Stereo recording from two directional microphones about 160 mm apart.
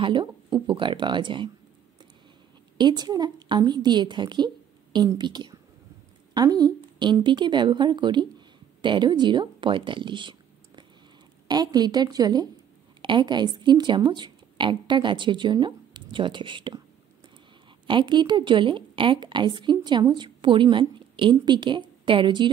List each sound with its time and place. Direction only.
0.0 s speech: 30° right (ahead or behind)
2.8 s a woman's voice: 25° right (ahead or behind)
11.4 s a woman's voice: 25° right (ahead or behind)
17.8 s a woman's voice: 30° right (ahead or behind)